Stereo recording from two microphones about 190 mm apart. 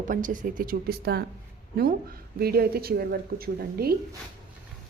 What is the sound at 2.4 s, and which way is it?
A woman's voice, 55° right (ahead or behind).